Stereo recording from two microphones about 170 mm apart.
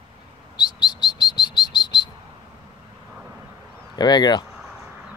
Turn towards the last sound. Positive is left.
turn(degrees=25)  # may be behind; listen again after turning